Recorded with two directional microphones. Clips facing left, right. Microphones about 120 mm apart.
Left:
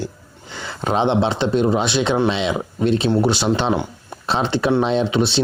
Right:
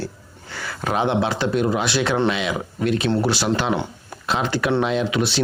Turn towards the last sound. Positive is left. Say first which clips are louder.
# left 3 dB
turn(degrees=25)  # may be behind; listen again after turning